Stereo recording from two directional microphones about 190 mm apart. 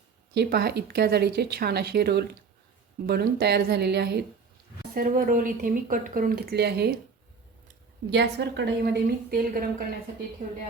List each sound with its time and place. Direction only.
0.3 s speech: 60° right (ahead or behind)
4.9 s speech: 45° right (ahead or behind)
8.1 s speech: 65° right (ahead or behind)